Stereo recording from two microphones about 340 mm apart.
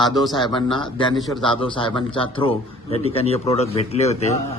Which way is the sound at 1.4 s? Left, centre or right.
Centre.